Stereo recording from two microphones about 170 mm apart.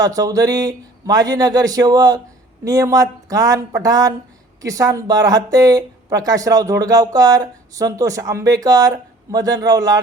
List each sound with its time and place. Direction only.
0.0 s speech: 20° right (ahead or behind)